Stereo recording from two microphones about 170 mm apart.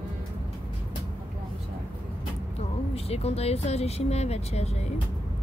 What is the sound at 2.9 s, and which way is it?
Speech, 35° left (ahead or behind).